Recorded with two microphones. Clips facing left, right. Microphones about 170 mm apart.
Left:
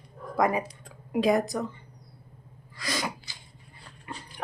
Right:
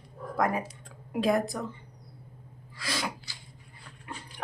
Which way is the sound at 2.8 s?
Centre (ahead or behind).